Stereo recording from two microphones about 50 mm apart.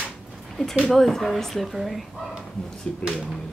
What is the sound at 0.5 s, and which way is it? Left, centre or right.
Speech, centre.